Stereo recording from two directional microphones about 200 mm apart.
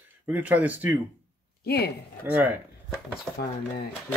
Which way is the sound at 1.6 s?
50° left (ahead or behind).